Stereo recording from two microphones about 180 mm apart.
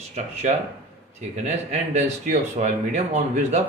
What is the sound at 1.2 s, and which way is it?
Speech, 40° right (ahead or behind).